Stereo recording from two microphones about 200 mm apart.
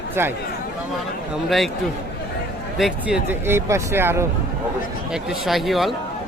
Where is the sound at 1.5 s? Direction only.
Centre (ahead or behind).